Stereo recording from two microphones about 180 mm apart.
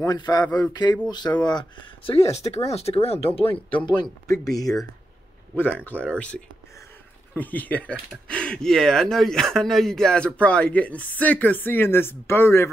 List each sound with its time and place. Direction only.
0.0 s speech: 20° left (ahead or behind)
5.6 s speech: 10° left (ahead or behind)